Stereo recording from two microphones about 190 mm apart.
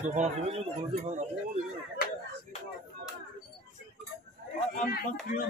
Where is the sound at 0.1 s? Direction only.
35° right (ahead or behind).